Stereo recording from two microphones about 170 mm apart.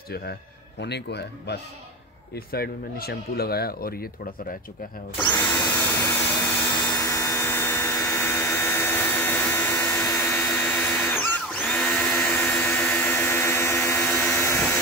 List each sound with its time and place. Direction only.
0.1 s speech: 75° left (ahead or behind)
2.3 s speech: 65° left (ahead or behind)
5.4 s vacuum cleaner: 10° left (ahead or behind)